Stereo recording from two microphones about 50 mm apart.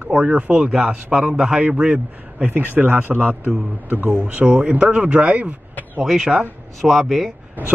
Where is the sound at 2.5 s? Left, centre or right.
Right.